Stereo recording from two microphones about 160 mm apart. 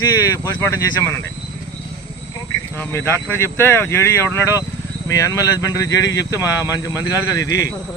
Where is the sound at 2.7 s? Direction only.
15° left (ahead or behind).